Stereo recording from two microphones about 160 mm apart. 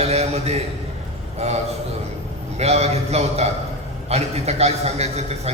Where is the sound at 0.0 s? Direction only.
40° right (ahead or behind).